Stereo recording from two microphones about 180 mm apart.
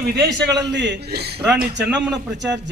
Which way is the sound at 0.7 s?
75° right (ahead or behind).